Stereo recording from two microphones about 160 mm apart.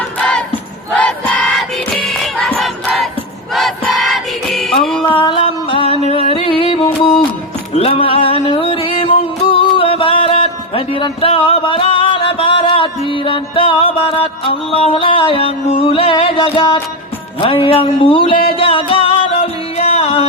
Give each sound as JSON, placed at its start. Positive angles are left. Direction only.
{"t": 0.2, "sound": "battle cry", "side_deg": 5}
{"t": 0.9, "sound": "crowd", "side_deg": 10}
{"t": 4.0, "sound": "music", "side_deg": 0}
{"t": 5.0, "sound": "music", "side_deg": 35}
{"t": 7.0, "sound": "music", "side_deg": 0}
{"t": 7.8, "sound": "music", "side_deg": 35}
{"t": 17.4, "sound": "speech", "side_deg": 35}
{"t": 18.5, "sound": "music", "side_deg": 35}